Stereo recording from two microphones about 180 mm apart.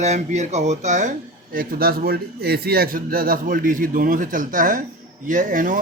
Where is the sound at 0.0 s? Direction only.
40° right (ahead or behind).